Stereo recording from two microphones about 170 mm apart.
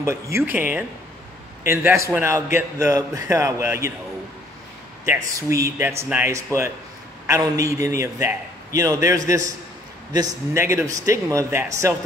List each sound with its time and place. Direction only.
0.0 s a man's voice: 15° right (ahead or behind)
5.0 s a man's voice: 15° right (ahead or behind)